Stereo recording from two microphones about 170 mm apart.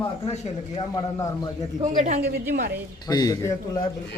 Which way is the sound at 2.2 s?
65° right (ahead or behind).